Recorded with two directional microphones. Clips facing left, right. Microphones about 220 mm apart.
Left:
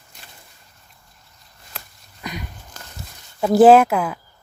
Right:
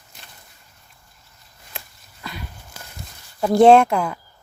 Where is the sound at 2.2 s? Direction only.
15° left (ahead or behind).